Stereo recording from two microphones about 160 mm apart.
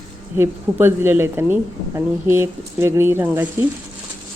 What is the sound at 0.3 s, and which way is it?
A woman's voice, 15° right (ahead or behind).